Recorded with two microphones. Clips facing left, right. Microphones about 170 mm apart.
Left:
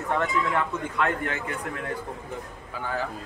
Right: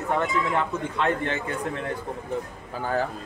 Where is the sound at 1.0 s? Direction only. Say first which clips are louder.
Right 2 dB; 25° right (ahead or behind).